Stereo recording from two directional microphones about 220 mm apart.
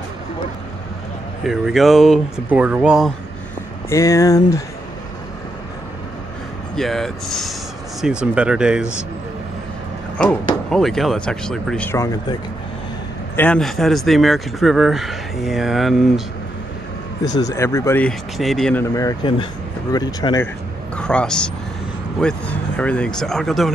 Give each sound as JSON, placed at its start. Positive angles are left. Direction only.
{"t": 1.4, "sound": "speech", "side_deg": 0}
{"t": 3.9, "sound": "speech", "side_deg": 15}
{"t": 6.7, "sound": "speech", "side_deg": 0}
{"t": 10.1, "sound": "speech", "side_deg": 5}
{"t": 13.4, "sound": "speech", "side_deg": 5}
{"t": 17.2, "sound": "speech", "side_deg": 15}
{"t": 20.9, "sound": "a man's voice", "side_deg": 5}